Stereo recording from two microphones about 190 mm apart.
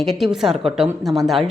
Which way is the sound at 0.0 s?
Centre (ahead or behind).